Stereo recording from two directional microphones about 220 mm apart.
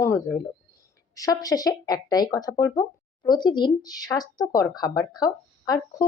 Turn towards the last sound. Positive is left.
turn(degrees=15)  # may be behind; listen again after turning